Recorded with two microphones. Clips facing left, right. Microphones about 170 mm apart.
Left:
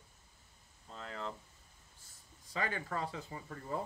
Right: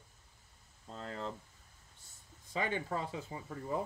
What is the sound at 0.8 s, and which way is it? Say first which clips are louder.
Speech: right 2 dB; 35° right (ahead or behind).